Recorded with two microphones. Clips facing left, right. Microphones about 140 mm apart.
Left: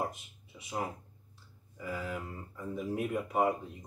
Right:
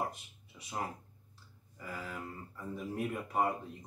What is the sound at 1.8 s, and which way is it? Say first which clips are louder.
Speech: left 5 dB; centre (ahead or behind).